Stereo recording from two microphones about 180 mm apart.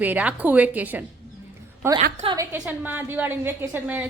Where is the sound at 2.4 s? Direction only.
10° right (ahead or behind).